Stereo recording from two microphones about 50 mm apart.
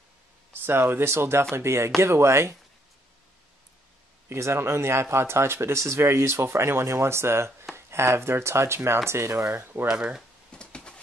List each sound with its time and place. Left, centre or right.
0.5 s speech: right
4.3 s speech: right
9.6 s speech: right
9.8 s speech: centre
10.5 s a sound: centre